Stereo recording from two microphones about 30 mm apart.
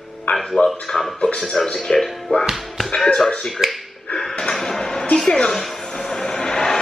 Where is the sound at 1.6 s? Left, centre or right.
Centre.